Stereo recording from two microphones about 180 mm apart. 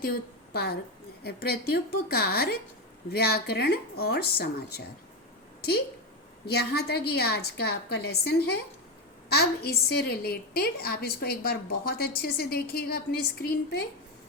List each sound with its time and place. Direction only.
0.5 s a woman's voice: 60° left (ahead or behind)
6.4 s a woman's voice: 65° left (ahead or behind)